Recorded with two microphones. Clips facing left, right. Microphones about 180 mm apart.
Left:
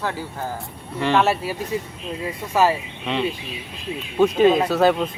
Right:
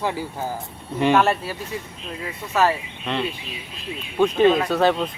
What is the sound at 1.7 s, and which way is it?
Speech, 15° left (ahead or behind).